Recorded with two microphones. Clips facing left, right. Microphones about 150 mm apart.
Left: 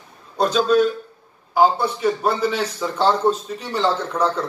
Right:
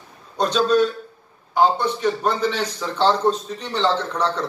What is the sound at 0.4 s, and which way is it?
A man's voice, 5° left (ahead or behind).